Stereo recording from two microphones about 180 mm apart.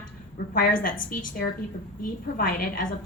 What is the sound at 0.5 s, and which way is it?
Speech, 50° left (ahead or behind).